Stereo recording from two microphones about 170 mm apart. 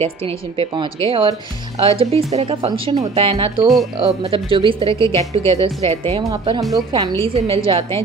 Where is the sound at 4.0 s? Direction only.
30° right (ahead or behind).